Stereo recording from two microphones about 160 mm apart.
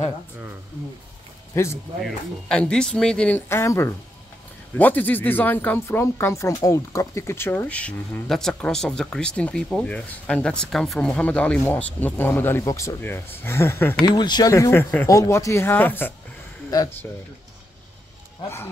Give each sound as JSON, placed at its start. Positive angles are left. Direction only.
{"t": 1.5, "sound": "speech", "side_deg": 15}
{"t": 2.0, "sound": "speech", "side_deg": 5}
{"t": 14.0, "sound": "speech", "side_deg": 25}